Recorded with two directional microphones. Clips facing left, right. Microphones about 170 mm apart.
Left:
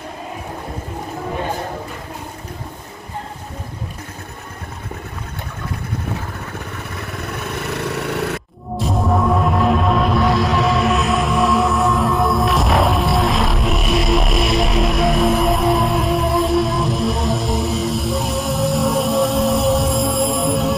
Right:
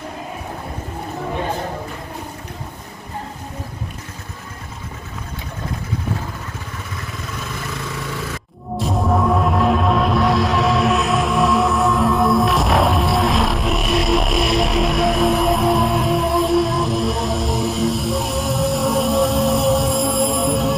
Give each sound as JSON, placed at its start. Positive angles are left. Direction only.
{"t": 7.1, "sound": "vehicle", "side_deg": 60}
{"t": 8.7, "sound": "music", "side_deg": 0}